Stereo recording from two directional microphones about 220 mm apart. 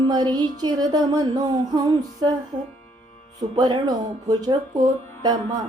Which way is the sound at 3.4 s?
20° right (ahead or behind).